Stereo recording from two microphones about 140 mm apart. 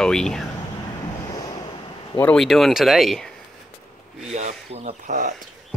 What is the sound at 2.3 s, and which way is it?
Speech, centre (ahead or behind).